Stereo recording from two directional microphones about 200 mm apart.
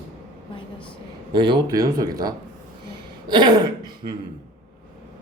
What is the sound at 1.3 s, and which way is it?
Speech, 25° right (ahead or behind).